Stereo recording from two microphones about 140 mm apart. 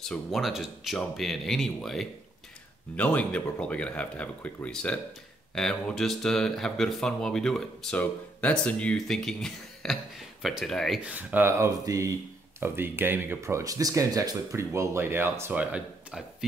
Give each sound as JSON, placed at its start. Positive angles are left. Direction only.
{"t": 0.0, "sound": "speech", "side_deg": 0}
{"t": 11.0, "sound": "speech", "side_deg": -10}